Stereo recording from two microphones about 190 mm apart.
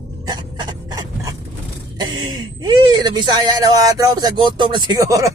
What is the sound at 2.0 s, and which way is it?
Speech, 20° right (ahead or behind).